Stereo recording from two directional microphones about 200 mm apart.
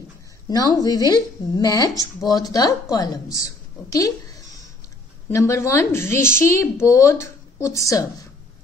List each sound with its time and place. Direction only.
0.5 s speech: 20° left (ahead or behind)
5.3 s speech: 15° left (ahead or behind)